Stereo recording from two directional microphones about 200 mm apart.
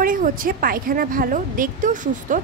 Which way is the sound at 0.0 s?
45° right (ahead or behind).